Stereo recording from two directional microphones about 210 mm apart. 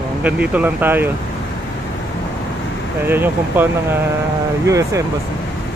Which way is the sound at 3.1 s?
10° right (ahead or behind).